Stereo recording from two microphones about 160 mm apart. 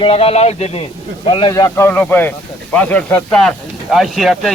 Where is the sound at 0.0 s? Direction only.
35° left (ahead or behind).